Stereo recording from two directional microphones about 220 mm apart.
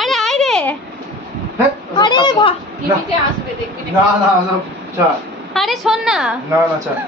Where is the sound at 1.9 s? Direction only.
20° left (ahead or behind).